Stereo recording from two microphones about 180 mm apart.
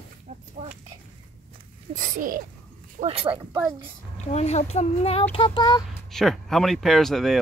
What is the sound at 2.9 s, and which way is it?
Speech, 35° right (ahead or behind).